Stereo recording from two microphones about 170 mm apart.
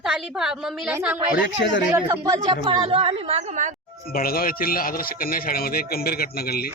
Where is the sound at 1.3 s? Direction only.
90° left.